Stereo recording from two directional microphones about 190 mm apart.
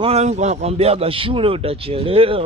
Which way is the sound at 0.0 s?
35° right (ahead or behind).